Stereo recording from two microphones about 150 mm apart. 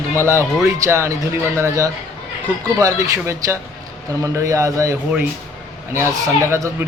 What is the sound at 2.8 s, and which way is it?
Speech, 20° right (ahead or behind).